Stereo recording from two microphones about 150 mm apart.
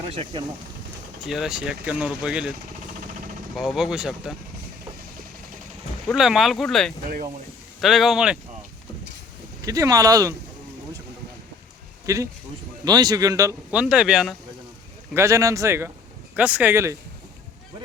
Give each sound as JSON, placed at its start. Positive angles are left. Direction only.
{"t": 0.1, "sound": "speech", "side_deg": -40}
{"t": 1.2, "sound": "speech", "side_deg": 0}
{"t": 3.5, "sound": "speech", "side_deg": 0}
{"t": 6.1, "sound": "speech", "side_deg": 0}
{"t": 9.6, "sound": "speech", "side_deg": -20}
{"t": 12.0, "sound": "speech", "side_deg": -20}
{"t": 13.7, "sound": "speech", "side_deg": -5}
{"t": 15.1, "sound": "speech", "side_deg": -20}